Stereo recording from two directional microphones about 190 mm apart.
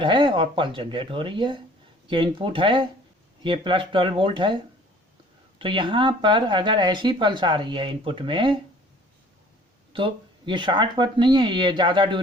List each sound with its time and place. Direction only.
0.0 s speech: 25° right (ahead or behind)
5.5 s speech: 25° right (ahead or behind)
9.9 s speech: 25° right (ahead or behind)